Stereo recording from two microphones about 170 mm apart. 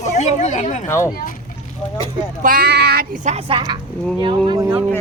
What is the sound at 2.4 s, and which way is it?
Speech, 60° right (ahead or behind).